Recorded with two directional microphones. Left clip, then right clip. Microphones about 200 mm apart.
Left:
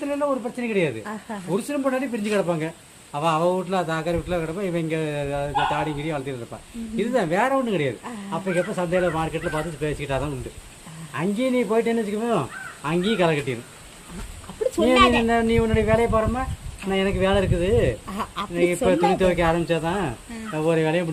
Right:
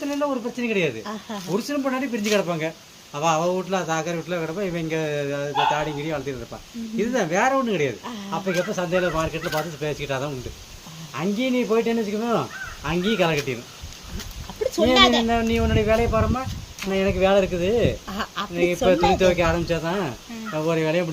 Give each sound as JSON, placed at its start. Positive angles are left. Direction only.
{"t": 0.6, "sound": "speech", "side_deg": 20}
{"t": 14.8, "sound": "speech", "side_deg": 15}